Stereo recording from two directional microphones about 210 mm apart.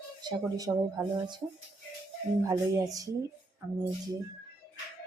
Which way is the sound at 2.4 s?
15° right (ahead or behind).